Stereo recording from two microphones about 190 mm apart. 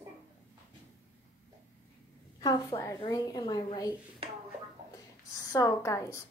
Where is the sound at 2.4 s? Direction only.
20° left (ahead or behind).